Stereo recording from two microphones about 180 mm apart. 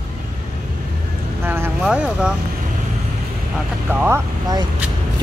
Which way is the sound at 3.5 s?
10° right (ahead or behind).